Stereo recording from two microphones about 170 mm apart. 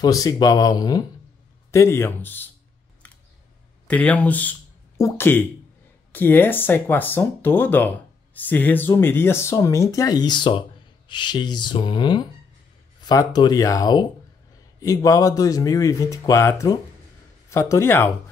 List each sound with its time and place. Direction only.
0.0 s speech: 20° left (ahead or behind)
3.8 s speech: 10° left (ahead or behind)